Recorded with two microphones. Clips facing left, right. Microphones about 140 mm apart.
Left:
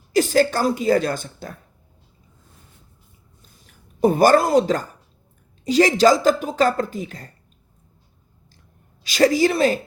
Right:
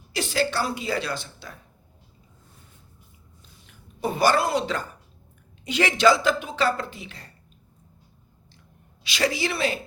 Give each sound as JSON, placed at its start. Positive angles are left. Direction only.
{"t": 0.1, "sound": "speech", "side_deg": 45}
{"t": 3.7, "sound": "speech", "side_deg": 45}
{"t": 9.0, "sound": "speech", "side_deg": 45}